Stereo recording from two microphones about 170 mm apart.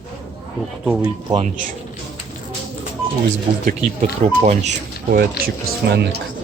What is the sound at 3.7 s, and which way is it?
Speech, 45° right (ahead or behind).